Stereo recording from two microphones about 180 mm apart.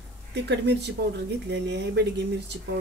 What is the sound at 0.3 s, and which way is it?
Speech, 75° right (ahead or behind).